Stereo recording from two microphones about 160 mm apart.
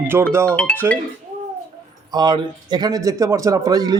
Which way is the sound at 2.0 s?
25° right (ahead or behind).